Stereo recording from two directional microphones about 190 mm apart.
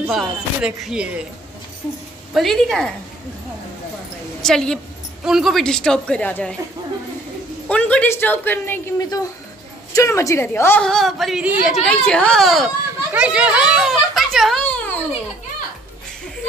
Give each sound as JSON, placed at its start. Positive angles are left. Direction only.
{"t": 0.0, "sound": "a woman's voice", "side_deg": 0}
{"t": 2.3, "sound": "a woman's voice", "side_deg": 0}
{"t": 4.4, "sound": "a woman's voice", "side_deg": 5}
{"t": 7.6, "sound": "a woman's voice", "side_deg": 5}